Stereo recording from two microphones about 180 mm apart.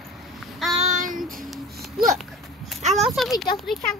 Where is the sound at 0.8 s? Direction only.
45° right (ahead or behind).